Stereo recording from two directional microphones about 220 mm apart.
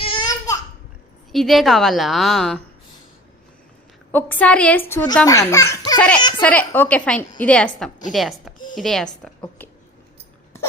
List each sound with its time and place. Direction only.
0.0 s a sound: 20° left (ahead or behind)
1.3 s a woman's voice: centre (ahead or behind)
4.1 s a child's voice: 5° left (ahead or behind)